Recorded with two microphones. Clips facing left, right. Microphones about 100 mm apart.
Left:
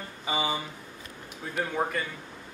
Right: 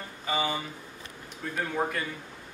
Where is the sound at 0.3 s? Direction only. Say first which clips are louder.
Even; 15° left (ahead or behind).